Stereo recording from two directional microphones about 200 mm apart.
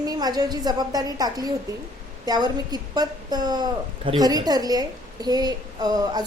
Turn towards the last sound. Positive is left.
turn(degrees=-20)  # may be behind; listen again after turning